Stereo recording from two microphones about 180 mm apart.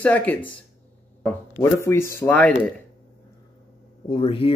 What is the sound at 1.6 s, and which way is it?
Speech, 15° left (ahead or behind).